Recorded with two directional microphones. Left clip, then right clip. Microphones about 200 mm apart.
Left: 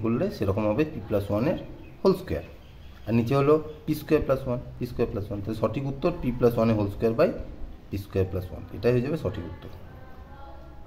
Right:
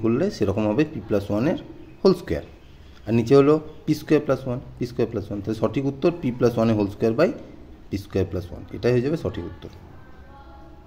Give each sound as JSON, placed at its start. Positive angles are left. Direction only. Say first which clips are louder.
{"t": 0.0, "sound": "speech", "louder": "right 5 dB", "side_deg": -25}